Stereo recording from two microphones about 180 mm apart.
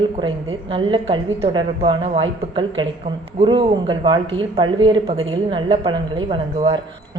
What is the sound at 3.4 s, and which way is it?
A woman's voice, 30° right (ahead or behind).